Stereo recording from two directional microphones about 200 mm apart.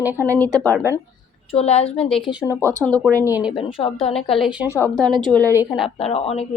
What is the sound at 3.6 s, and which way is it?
Speech, 25° left (ahead or behind).